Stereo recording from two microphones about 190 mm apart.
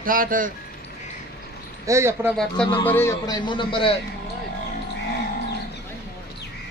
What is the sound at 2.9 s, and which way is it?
A man's voice, 15° left (ahead or behind).